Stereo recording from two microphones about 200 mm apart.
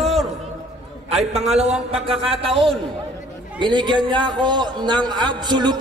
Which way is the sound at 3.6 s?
25° right (ahead or behind).